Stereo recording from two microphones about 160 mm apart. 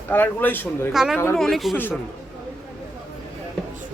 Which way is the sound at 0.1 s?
10° left (ahead or behind).